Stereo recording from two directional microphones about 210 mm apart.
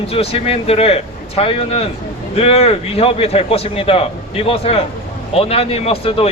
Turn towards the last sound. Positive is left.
turn(degrees=30)  # may be behind; listen again after turning